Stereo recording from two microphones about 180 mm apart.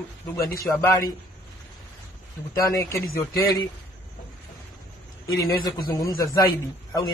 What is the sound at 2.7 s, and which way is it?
Speech, 15° left (ahead or behind).